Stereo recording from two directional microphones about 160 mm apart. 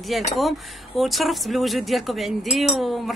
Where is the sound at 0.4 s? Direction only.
Centre (ahead or behind).